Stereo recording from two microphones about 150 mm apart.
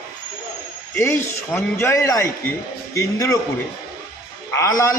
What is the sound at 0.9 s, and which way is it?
A man's voice, 15° left (ahead or behind).